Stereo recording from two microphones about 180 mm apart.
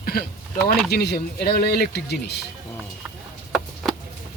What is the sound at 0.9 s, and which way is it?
Speech, 65° left (ahead or behind).